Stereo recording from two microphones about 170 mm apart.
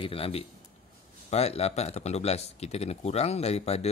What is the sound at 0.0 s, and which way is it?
Speech, 35° left (ahead or behind).